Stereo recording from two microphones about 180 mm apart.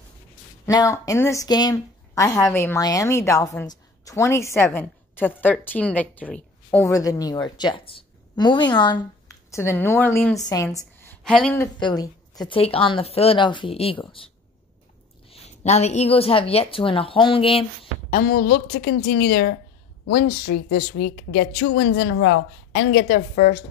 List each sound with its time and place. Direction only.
0.7 s a woman's voice: 20° left (ahead or behind)
6.9 s a woman's voice: 20° left (ahead or behind)
18.1 s speech: 60° left (ahead or behind)
20.7 s speech: 70° left (ahead or behind); by 23.6 s 50° left (ahead or behind)